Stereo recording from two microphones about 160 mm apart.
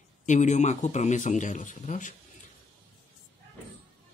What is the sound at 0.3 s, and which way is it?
Speech, 50° left (ahead or behind).